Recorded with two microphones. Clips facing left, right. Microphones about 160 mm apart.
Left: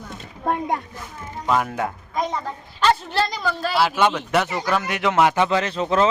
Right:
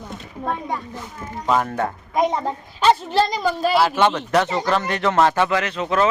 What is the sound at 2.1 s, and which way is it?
Speech, 20° right (ahead or behind).